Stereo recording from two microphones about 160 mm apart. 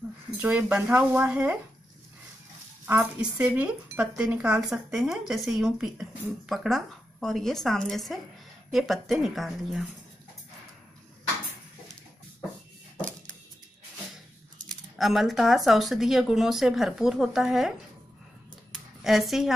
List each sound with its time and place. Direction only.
0.4 s speech: 10° right (ahead or behind)
2.9 s speech: 5° right (ahead or behind)
14.7 s speech: centre (ahead or behind)
19.0 s speech: centre (ahead or behind)